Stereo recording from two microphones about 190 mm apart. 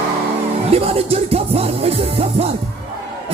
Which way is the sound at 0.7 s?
30° right (ahead or behind).